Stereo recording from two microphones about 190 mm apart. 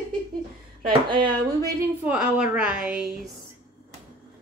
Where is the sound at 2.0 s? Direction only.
5° right (ahead or behind).